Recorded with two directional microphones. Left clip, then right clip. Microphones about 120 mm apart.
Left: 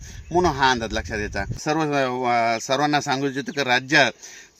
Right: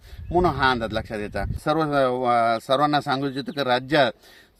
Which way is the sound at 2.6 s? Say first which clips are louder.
Even; 40° right (ahead or behind).